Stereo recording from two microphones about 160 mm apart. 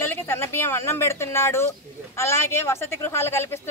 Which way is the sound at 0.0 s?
15° left (ahead or behind).